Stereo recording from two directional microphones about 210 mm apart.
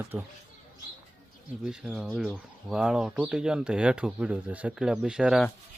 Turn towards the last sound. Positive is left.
turn(degrees=-5)  # may be behind; listen again after turning